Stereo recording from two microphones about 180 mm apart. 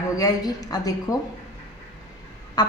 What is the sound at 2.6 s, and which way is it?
Speech, 20° left (ahead or behind).